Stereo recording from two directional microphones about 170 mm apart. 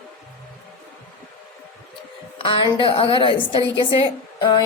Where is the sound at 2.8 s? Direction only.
30° left (ahead or behind).